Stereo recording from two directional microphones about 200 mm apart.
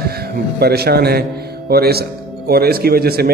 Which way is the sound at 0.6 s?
50° right (ahead or behind).